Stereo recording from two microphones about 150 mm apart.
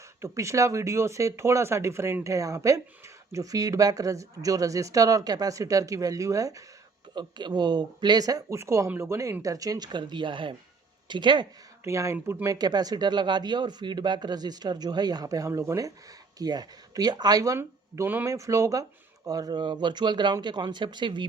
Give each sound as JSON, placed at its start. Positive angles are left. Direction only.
{"t": 0.2, "sound": "speech", "side_deg": -20}
{"t": 11.8, "sound": "speech", "side_deg": -20}